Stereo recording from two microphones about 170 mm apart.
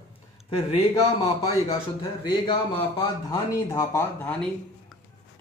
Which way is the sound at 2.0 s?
30° left (ahead or behind).